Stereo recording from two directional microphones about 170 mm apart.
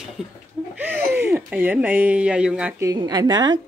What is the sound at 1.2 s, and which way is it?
Speech, 10° right (ahead or behind).